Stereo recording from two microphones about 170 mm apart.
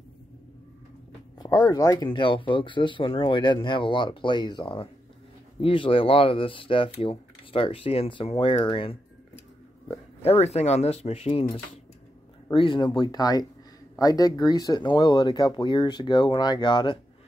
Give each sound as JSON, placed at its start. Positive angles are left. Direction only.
{"t": 1.4, "sound": "speech", "side_deg": 25}
{"t": 12.4, "sound": "speech", "side_deg": 30}